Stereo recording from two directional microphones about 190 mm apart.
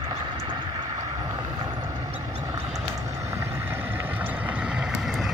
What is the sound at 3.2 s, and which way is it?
Vehicle, 10° right (ahead or behind).